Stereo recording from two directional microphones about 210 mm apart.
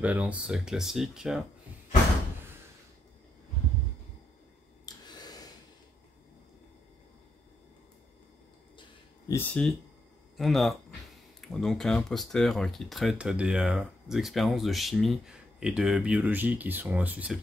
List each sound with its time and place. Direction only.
0.0 s speech: 5° right (ahead or behind)
4.8 s a sound: 20° left (ahead or behind)
9.3 s speech: 10° left (ahead or behind)